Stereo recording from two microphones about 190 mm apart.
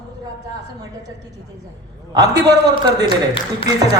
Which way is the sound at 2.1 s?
20° right (ahead or behind).